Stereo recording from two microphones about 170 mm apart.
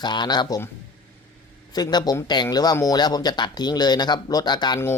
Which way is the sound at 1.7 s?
25° left (ahead or behind).